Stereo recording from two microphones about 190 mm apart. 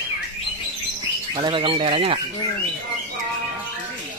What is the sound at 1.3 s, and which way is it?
Speech, 25° right (ahead or behind).